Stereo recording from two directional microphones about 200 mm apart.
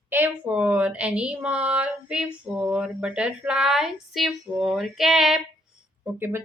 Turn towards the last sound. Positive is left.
turn(degrees=-10)  # may be behind; listen again after turning